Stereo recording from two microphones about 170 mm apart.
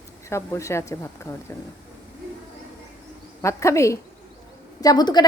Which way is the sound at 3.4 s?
15° left (ahead or behind).